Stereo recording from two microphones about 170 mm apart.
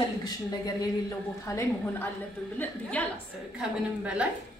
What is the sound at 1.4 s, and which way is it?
A woman's voice, 15° left (ahead or behind).